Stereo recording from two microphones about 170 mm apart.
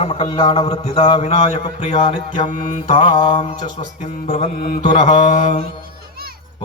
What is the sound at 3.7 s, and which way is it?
Mantra, 50° left (ahead or behind).